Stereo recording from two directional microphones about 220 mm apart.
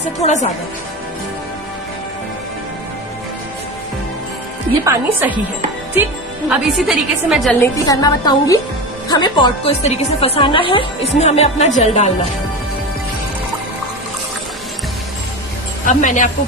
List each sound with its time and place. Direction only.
0.0 s a woman's voice: 30° left (ahead or behind)
4.8 s speech: 10° right (ahead or behind)
6.5 s a woman's voice: centre (ahead or behind)
7.6 s a woman's voice: 15° left (ahead or behind); by 12.1 s 30° left (ahead or behind)
15.8 s a woman's voice: 35° left (ahead or behind)